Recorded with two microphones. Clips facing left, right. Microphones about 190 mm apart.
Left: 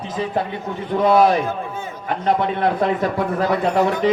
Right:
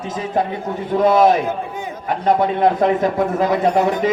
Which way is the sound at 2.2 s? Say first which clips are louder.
Right 4 dB; 45° right (ahead or behind).